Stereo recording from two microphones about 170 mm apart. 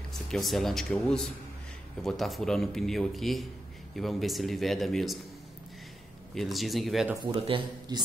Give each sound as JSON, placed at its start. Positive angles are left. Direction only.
{"t": 0.1, "sound": "a man's voice", "side_deg": 0}
{"t": 6.3, "sound": "a man's voice", "side_deg": 0}
{"t": 7.4, "sound": "speech", "side_deg": -30}